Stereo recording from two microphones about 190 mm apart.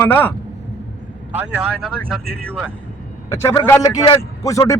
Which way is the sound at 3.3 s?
15° left (ahead or behind).